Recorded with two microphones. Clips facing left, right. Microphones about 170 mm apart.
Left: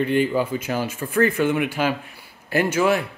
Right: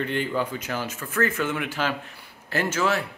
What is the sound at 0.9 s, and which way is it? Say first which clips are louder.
Speech: left 6 dB; 30° left (ahead or behind).